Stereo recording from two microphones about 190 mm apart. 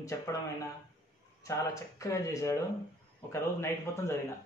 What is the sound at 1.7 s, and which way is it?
Speech, 15° left (ahead or behind).